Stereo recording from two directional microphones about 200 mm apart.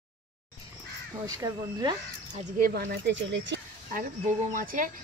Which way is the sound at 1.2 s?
20° right (ahead or behind).